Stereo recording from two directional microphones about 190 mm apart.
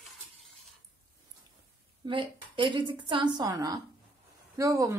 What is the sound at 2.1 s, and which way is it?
A woman's voice, 25° right (ahead or behind).